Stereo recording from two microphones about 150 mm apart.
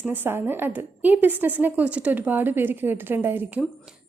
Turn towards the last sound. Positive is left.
turn(degrees=-15)  # may be behind; listen again after turning